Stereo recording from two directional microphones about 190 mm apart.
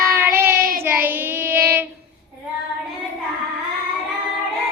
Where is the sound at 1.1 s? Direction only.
10° right (ahead or behind).